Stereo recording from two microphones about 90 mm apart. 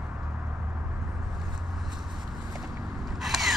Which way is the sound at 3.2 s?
Centre (ahead or behind).